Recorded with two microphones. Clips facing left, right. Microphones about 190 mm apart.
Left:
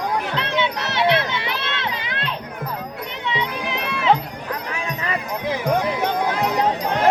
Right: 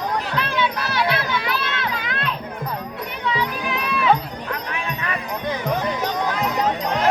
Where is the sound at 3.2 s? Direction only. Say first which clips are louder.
Right 1 dB; 20° left (ahead or behind).